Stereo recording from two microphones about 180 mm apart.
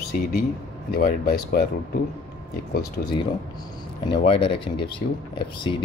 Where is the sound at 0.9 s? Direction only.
55° left (ahead or behind).